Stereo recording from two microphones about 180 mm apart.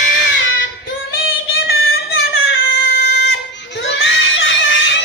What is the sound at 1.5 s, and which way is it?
Child singing, 90° left.